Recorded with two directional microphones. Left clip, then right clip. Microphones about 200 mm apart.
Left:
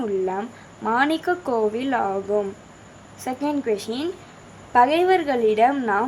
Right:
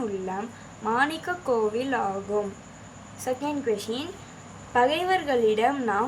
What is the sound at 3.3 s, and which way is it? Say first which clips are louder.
Speech: left 3 dB; 35° left (ahead or behind).